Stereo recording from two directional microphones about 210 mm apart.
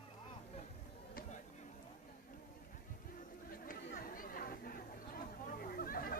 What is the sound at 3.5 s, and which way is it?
Chatter, 40° left (ahead or behind).